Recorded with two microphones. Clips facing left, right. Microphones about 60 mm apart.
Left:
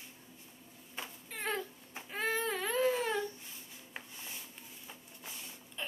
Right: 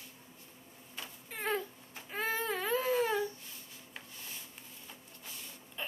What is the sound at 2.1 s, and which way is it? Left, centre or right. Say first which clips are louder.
Baby cry: even; centre.